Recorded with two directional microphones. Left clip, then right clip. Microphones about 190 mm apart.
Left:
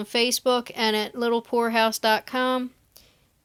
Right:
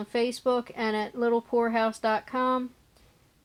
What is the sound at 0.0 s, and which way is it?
Speech, 20° left (ahead or behind).